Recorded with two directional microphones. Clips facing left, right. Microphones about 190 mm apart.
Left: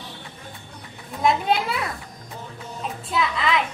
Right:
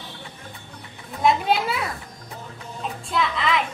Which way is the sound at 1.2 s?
Centre (ahead or behind).